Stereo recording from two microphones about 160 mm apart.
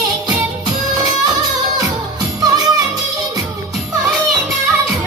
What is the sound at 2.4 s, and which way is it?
Music, 25° right (ahead or behind).